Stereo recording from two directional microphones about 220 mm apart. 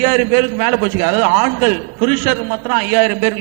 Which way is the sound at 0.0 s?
15° right (ahead or behind).